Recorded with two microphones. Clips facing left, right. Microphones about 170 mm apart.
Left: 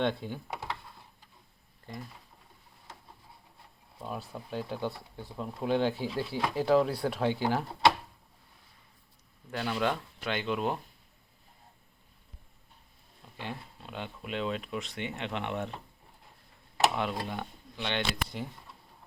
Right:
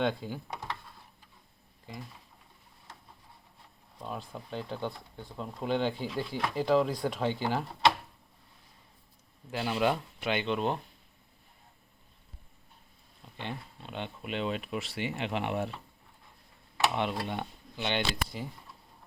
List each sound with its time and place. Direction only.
0.0 s speech: centre (ahead or behind)
3.9 s speech: 5° left (ahead or behind)
9.5 s speech: 10° right (ahead or behind)
10.4 s speech: 5° left (ahead or behind)
13.3 s speech: 5° left (ahead or behind)
16.9 s speech: centre (ahead or behind)